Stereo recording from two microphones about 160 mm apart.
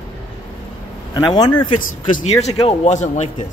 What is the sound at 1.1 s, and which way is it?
Speech, 25° left (ahead or behind).